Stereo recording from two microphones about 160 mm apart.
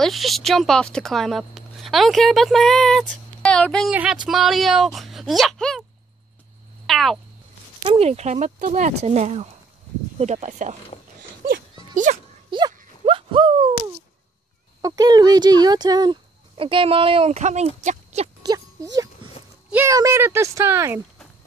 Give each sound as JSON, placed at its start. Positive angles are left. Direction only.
{"t": 0.0, "sound": "a woman's voice", "side_deg": 0}
{"t": 6.9, "sound": "cat", "side_deg": 0}
{"t": 7.8, "sound": "speech", "side_deg": -35}
{"t": 11.9, "sound": "speech", "side_deg": -50}
{"t": 12.4, "sound": "a sound", "side_deg": -30}
{"t": 14.8, "sound": "speech", "side_deg": -20}
{"t": 19.7, "sound": "speech", "side_deg": -15}